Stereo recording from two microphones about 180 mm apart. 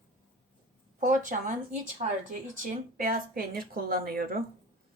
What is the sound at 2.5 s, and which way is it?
Speech, 50° right (ahead or behind).